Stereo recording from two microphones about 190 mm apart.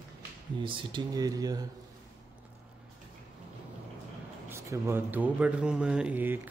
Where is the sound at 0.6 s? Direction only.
25° right (ahead or behind).